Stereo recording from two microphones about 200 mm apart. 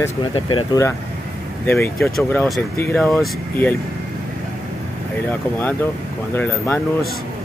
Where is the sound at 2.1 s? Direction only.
5° left (ahead or behind).